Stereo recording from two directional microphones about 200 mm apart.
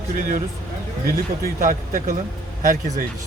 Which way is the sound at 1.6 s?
40° right (ahead or behind).